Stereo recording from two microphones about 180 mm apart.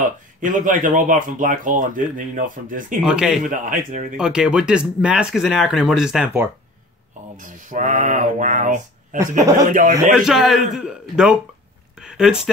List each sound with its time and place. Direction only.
0.4 s speech: 45° right (ahead or behind)
3.0 s speech: 5° right (ahead or behind)
3.4 s speech: 50° right (ahead or behind)
4.2 s speech: 5° right (ahead or behind)
7.3 s speech: 45° right (ahead or behind)
10.1 s speech: centre (ahead or behind)